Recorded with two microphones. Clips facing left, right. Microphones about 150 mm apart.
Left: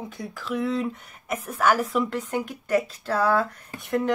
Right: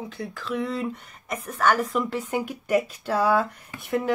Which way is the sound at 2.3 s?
10° right (ahead or behind).